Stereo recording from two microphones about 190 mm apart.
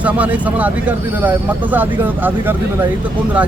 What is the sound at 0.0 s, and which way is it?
Speech, 10° right (ahead or behind).